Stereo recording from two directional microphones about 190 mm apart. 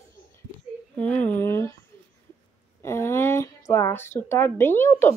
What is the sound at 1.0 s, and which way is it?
Speech, 10° left (ahead or behind).